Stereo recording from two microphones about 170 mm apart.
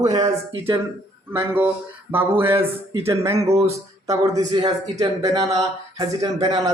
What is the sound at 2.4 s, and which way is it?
Speech, 15° right (ahead or behind).